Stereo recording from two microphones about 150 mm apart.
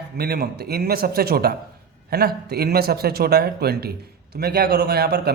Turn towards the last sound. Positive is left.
turn(degrees=-90)